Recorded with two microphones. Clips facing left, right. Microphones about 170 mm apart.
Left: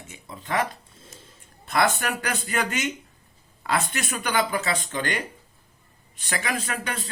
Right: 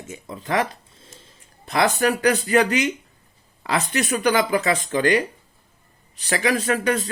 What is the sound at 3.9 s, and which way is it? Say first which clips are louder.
Speech: right 6 dB; 40° right (ahead or behind).